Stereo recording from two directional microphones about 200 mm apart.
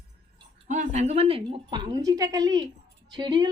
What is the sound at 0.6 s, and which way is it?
A woman's voice, 35° right (ahead or behind).